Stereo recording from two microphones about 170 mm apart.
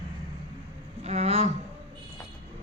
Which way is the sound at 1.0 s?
40° right (ahead or behind).